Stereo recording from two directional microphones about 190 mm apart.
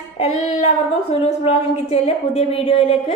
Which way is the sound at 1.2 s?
35° left (ahead or behind).